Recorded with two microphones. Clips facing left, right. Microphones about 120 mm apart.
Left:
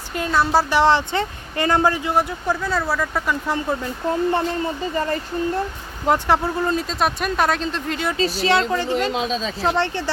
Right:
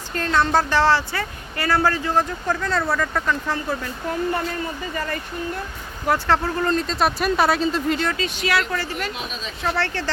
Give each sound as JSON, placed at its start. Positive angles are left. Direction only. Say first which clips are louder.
{"t": 0.1, "sound": "speech", "louder": "left 1 dB", "side_deg": 10}
{"t": 6.1, "sound": "speech", "louder": "left 2 dB", "side_deg": 15}
{"t": 8.2, "sound": "speech", "louder": "left 4 dB", "side_deg": 30}